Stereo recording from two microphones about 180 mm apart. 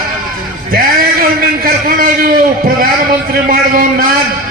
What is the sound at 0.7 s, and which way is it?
A man's voice, 50° right (ahead or behind).